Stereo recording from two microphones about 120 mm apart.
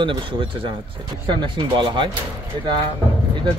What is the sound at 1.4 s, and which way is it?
Speech, 45° right (ahead or behind).